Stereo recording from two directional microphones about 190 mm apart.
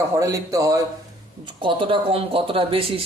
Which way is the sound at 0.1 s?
15° right (ahead or behind).